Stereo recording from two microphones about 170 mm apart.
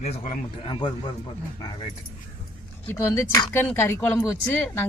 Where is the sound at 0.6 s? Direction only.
25° left (ahead or behind).